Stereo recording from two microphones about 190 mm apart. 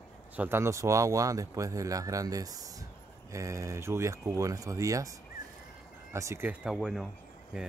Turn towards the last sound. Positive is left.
turn(degrees=-5)  # may be behind; listen again after turning